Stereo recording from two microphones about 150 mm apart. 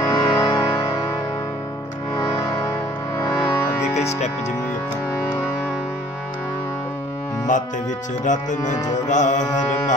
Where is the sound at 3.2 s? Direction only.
25° left (ahead or behind).